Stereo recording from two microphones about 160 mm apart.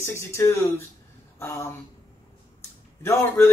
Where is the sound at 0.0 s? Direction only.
15° left (ahead or behind).